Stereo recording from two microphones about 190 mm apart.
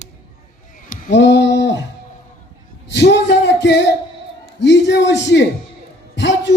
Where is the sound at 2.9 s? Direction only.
65° left (ahead or behind).